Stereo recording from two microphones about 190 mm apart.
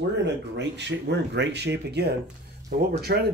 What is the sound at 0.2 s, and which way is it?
A man's voice, 65° right (ahead or behind).